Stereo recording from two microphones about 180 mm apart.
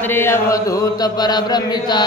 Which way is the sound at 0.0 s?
10° left (ahead or behind).